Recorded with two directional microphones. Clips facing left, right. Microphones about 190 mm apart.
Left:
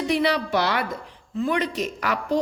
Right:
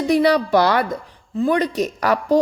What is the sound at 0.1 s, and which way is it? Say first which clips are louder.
A woman's voice: right 8 dB; 40° right (ahead or behind).